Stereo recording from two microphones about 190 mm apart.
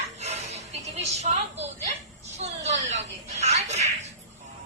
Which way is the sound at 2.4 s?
35° right (ahead or behind).